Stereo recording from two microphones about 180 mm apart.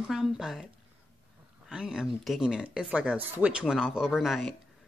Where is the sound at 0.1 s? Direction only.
Centre (ahead or behind).